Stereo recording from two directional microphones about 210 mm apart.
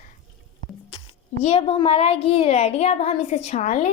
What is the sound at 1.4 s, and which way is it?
A child's voice, 30° left (ahead or behind).